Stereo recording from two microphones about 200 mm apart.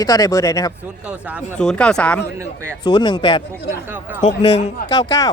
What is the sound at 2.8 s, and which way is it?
Speech, 20° left (ahead or behind).